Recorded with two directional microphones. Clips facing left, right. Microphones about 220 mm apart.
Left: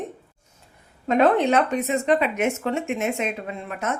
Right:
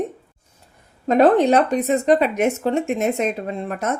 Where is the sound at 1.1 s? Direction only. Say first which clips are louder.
Right 4 dB; 35° right (ahead or behind).